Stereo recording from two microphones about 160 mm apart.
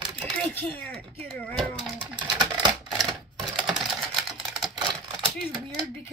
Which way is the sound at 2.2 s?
30° right (ahead or behind).